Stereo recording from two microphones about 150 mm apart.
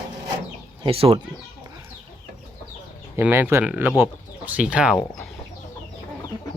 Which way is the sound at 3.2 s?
10° right (ahead or behind).